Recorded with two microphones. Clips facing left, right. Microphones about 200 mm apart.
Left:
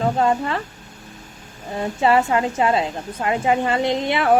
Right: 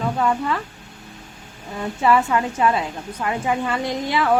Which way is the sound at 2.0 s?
25° left (ahead or behind).